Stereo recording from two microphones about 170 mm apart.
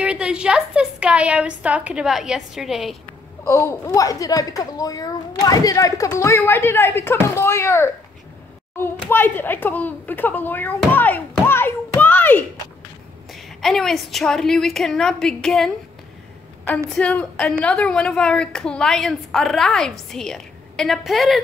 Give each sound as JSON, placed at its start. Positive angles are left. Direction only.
{"t": 0.0, "sound": "a woman's voice", "side_deg": -5}
{"t": 3.4, "sound": "a woman's voice", "side_deg": 15}